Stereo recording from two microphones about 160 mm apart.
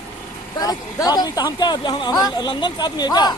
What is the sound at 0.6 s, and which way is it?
Speech, 25° left (ahead or behind).